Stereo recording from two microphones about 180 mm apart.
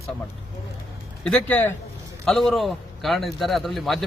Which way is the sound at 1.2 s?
5° left (ahead or behind).